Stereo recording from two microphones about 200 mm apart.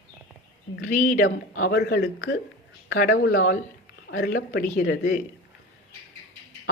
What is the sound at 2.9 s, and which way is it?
A woman's voice, 45° left (ahead or behind).